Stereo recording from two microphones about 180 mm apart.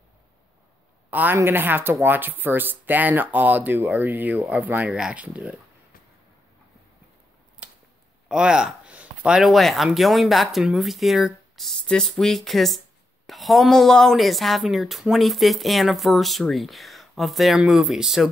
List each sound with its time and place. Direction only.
1.1 s speech: 10° right (ahead or behind)
7.6 s a sound: 5° right (ahead or behind)
8.3 s speech: 5° right (ahead or behind)